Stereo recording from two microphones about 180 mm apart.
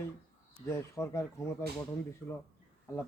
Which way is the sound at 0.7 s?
15° left (ahead or behind).